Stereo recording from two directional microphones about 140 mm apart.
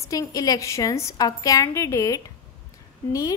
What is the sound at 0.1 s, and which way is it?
A woman's voice, 25° left (ahead or behind).